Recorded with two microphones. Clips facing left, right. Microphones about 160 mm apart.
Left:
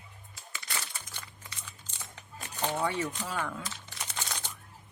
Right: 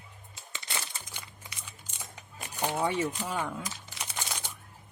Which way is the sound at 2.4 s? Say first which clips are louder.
Right 1 dB; 15° right (ahead or behind).